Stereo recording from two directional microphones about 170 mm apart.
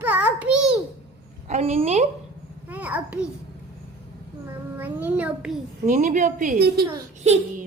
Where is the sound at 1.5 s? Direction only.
40° right (ahead or behind).